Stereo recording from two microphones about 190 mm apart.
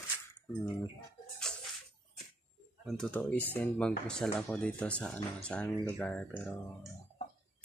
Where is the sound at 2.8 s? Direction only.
5° left (ahead or behind).